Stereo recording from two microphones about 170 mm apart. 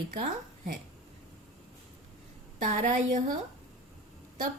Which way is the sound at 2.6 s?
50° right (ahead or behind).